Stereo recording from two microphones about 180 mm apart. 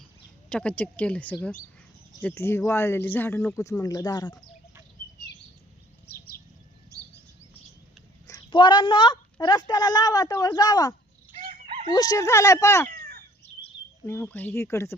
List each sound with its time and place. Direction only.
0.5 s a man's voice: 5° left (ahead or behind); by 4.4 s 20° left (ahead or behind)
6.1 s bird: 55° left (ahead or behind)
8.3 s a woman's voice: 25° left (ahead or behind)
11.3 s fowl: 50° right (ahead or behind)
11.9 s a man's voice: 20° left (ahead or behind)
12.9 s crow: 55° right (ahead or behind)
14.1 s a man's voice: 10° left (ahead or behind)